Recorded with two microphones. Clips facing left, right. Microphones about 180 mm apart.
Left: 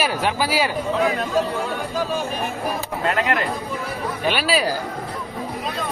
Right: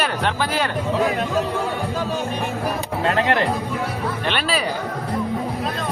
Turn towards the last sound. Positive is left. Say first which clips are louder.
# left 2 dB
turn(degrees=5)  # may be behind; listen again after turning